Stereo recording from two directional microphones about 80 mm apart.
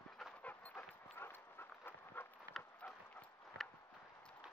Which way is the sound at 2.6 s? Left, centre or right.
Centre.